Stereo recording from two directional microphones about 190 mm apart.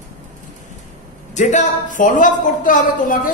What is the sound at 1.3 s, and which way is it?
A man's voice, 40° left (ahead or behind).